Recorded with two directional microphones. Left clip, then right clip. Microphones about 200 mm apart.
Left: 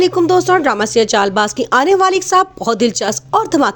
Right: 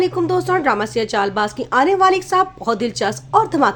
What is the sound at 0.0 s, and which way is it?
A woman's voice, 35° left (ahead or behind).